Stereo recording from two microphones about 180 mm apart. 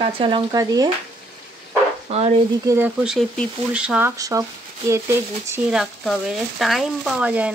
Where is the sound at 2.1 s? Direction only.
35° right (ahead or behind).